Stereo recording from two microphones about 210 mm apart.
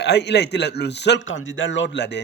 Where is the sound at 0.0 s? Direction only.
55° left (ahead or behind).